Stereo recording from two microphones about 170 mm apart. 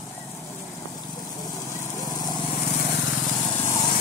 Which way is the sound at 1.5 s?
15° left (ahead or behind).